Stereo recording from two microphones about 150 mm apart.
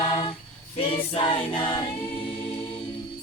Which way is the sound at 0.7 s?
35° left (ahead or behind).